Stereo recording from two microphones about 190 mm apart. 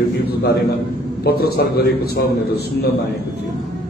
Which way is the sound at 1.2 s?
55° left (ahead or behind).